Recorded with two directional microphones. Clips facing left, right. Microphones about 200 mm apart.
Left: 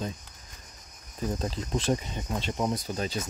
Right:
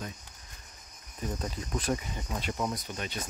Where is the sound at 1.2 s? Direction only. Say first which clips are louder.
Left 4 dB; 30° left (ahead or behind).